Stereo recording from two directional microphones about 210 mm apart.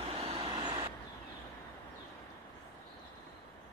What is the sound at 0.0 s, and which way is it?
Vehicle, 30° right (ahead or behind).